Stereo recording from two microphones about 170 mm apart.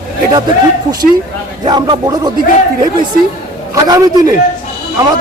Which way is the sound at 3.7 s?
20° right (ahead or behind).